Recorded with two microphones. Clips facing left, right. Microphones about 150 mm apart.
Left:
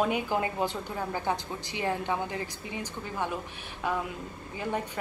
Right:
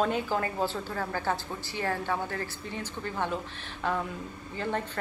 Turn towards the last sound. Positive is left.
turn(degrees=10)  # may be behind; listen again after turning